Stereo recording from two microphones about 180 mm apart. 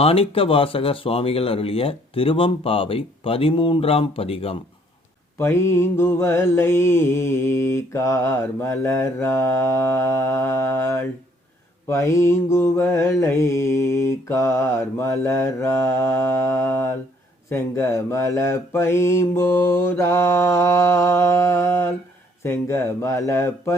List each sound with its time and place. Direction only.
0.0 s speech: 35° left (ahead or behind)
5.4 s mantra: 15° left (ahead or behind)